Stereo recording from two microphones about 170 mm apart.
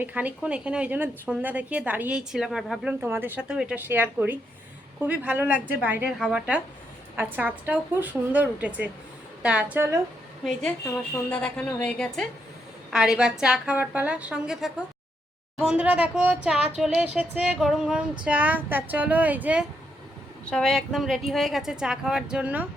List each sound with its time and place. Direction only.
0.0 s a woman's voice: 10° right (ahead or behind)
3.0 s a woman's voice: 10° right (ahead or behind)
11.1 s a woman's voice: 10° left (ahead or behind); by 19.6 s 10° right (ahead or behind)
20.4 s a woman's voice: 5° left (ahead or behind)